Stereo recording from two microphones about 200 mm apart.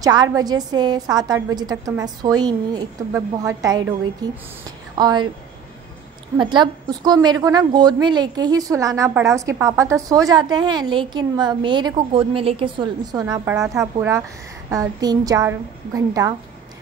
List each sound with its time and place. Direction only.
0.0 s a woman's voice: 20° right (ahead or behind)
6.3 s a woman's voice: 25° right (ahead or behind)